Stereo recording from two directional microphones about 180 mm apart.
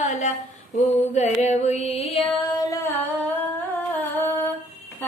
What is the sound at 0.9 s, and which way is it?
Mantra, 40° left (ahead or behind).